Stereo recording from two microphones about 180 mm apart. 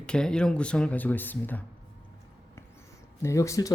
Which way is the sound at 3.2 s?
15° left (ahead or behind).